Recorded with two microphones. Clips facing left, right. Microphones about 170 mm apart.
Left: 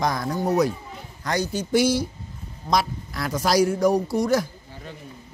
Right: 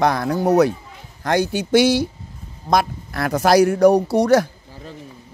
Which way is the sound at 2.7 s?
55° right (ahead or behind).